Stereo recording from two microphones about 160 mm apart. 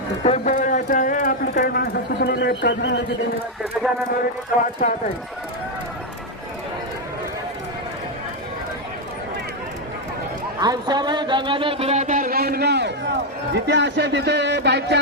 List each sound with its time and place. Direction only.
0.3 s speech: 40° left (ahead or behind)
0.5 s a sound: 55° left (ahead or behind); by 3.0 s 90° left
3.8 s speech: 5° right (ahead or behind)
4.8 s speech: 50° left (ahead or behind)
10.6 s speech: 25° right (ahead or behind); by 14.9 s 90° right